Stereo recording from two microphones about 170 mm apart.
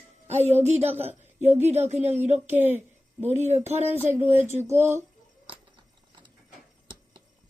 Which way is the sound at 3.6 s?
40° right (ahead or behind).